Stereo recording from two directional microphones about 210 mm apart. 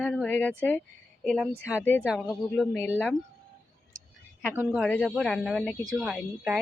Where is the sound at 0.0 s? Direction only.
5° left (ahead or behind).